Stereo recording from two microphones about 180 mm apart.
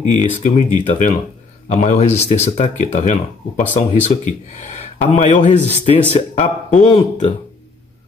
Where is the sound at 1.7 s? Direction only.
40° left (ahead or behind).